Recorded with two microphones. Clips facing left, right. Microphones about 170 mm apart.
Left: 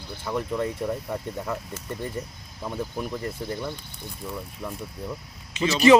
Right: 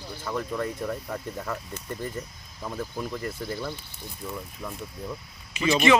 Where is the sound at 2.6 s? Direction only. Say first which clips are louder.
Left 2 dB; 15° left (ahead or behind).